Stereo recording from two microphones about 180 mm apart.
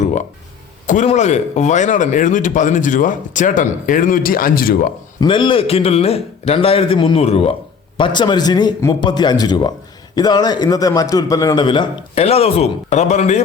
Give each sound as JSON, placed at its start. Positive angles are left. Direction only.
{"t": 0.9, "sound": "speech", "side_deg": 40}
{"t": 5.2, "sound": "a man's voice", "side_deg": 25}